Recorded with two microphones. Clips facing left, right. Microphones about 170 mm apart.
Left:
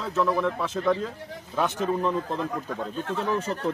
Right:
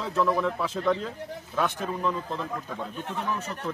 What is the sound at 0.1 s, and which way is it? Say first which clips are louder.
Speech: left 1 dB; centre (ahead or behind).